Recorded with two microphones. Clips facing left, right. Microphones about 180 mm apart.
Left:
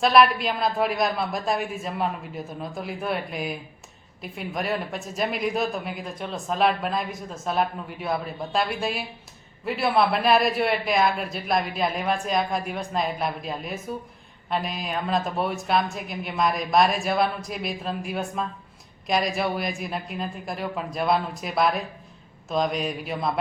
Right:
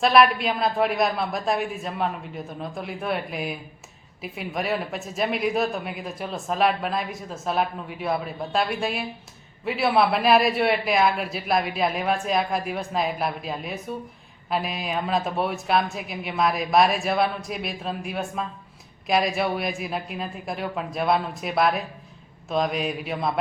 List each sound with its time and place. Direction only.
0.0 s speech: centre (ahead or behind)